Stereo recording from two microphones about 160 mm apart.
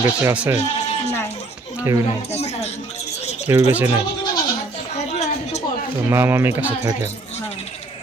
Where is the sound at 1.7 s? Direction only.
15° right (ahead or behind).